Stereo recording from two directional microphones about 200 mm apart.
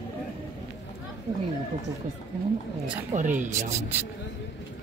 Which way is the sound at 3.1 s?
40° right (ahead or behind).